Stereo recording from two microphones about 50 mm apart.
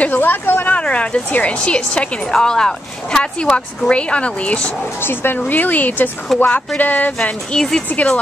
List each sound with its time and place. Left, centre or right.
0.0 s speech: left
0.7 s a woman's voice: left
2.3 s a woman's voice: centre
5.0 s speech: left
5.5 s speech: left
6.3 s speech: centre
6.8 s speech: left
7.5 s speech: centre
7.9 s speech: left